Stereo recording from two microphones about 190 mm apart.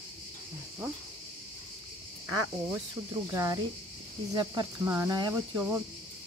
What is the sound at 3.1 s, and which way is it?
Speech, 15° right (ahead or behind).